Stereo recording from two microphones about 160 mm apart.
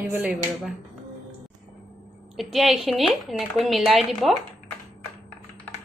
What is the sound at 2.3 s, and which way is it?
A woman's voice, centre (ahead or behind).